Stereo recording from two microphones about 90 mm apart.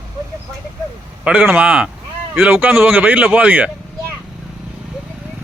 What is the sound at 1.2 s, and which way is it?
Speech, 20° right (ahead or behind).